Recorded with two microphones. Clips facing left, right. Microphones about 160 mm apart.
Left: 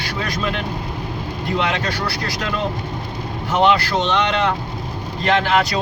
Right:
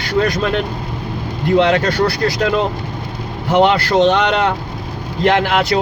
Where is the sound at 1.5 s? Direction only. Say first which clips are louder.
Right 9 dB; 65° right (ahead or behind).